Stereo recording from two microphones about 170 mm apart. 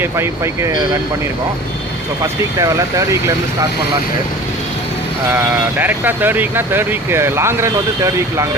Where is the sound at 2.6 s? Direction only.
20° right (ahead or behind).